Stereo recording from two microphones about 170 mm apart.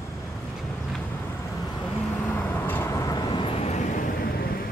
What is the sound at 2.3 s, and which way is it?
Vehicle, 10° left (ahead or behind).